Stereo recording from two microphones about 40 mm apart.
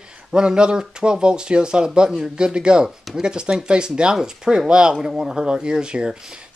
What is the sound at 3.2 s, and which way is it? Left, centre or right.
Speech, right.